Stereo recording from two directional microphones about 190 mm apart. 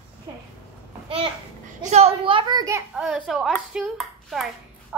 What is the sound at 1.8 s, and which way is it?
A child's voice, 35° right (ahead or behind).